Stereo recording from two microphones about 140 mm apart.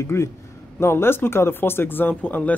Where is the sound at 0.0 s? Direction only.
20° left (ahead or behind).